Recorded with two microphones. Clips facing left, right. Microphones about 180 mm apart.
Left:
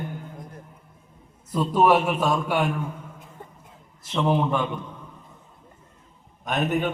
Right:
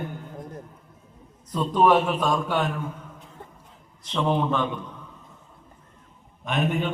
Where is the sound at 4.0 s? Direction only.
5° left (ahead or behind).